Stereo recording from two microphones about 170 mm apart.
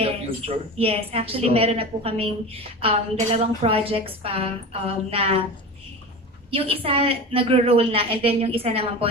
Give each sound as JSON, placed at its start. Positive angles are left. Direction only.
{"t": 0.0, "sound": "speech", "side_deg": -35}
{"t": 6.5, "sound": "speech", "side_deg": -35}